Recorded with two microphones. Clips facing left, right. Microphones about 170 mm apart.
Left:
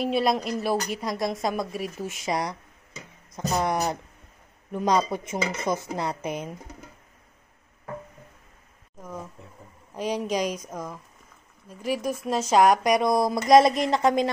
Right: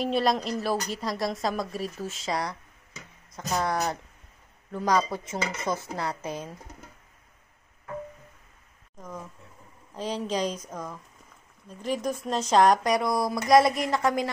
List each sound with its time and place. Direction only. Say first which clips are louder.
0.0 s a woman's voice: left 1 dB; 10° left (ahead or behind)
9.9 s a woman's voice: left 3 dB; 15° left (ahead or behind)